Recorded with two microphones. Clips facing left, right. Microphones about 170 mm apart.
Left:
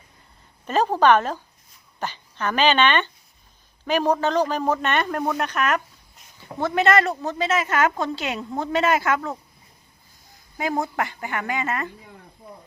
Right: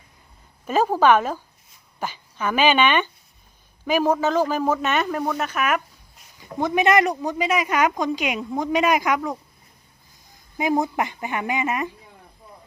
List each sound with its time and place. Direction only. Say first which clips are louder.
0.7 s a woman's voice: even; 10° right (ahead or behind)
10.6 s a woman's voice: right 3 dB; 20° right (ahead or behind)